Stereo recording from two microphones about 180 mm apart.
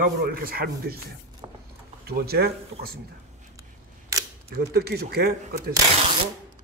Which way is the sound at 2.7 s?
35° right (ahead or behind).